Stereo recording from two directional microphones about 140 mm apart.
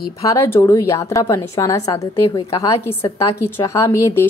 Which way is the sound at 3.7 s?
20° left (ahead or behind).